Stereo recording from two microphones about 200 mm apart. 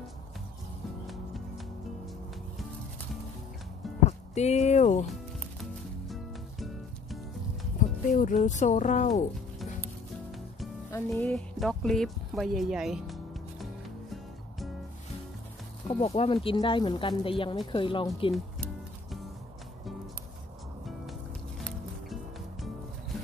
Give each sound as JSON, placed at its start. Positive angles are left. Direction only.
{"t": 4.0, "sound": "speech", "side_deg": 35}
{"t": 8.1, "sound": "speech", "side_deg": 40}
{"t": 10.9, "sound": "speech", "side_deg": 5}
{"t": 15.9, "sound": "speech", "side_deg": 30}
{"t": 21.5, "sound": "music", "side_deg": 0}